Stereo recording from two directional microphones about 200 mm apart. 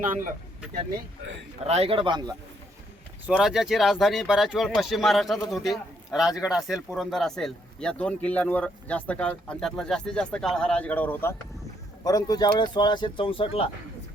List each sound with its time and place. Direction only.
0.0 s speech: 40° right (ahead or behind)
1.6 s a man's voice: 30° right (ahead or behind)
3.2 s speech: 5° right (ahead or behind); by 13.7 s 30° left (ahead or behind)